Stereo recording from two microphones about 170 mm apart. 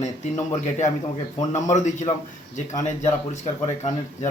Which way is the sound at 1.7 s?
45° left (ahead or behind).